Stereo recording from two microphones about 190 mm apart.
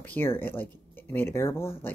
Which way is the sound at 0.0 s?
10° left (ahead or behind).